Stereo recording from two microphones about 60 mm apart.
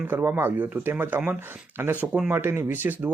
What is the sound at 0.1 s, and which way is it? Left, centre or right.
Speech, right.